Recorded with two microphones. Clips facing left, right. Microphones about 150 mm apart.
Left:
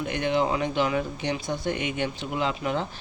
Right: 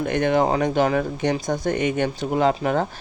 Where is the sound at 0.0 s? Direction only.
50° right (ahead or behind).